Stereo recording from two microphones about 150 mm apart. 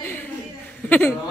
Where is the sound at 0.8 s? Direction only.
10° left (ahead or behind).